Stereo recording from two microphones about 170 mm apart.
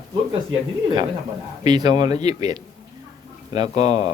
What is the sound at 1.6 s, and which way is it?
Speech, 25° right (ahead or behind).